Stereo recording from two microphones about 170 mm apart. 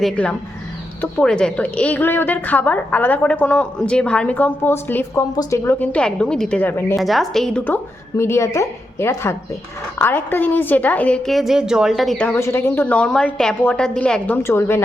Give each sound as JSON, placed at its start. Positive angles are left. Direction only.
{"t": 0.0, "sound": "a woman's voice", "side_deg": 5}
{"t": 5.8, "sound": "a woman's voice", "side_deg": 5}
{"t": 8.1, "sound": "a woman's voice", "side_deg": 15}